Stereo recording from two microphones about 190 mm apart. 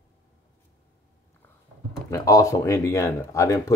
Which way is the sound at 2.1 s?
20° left (ahead or behind).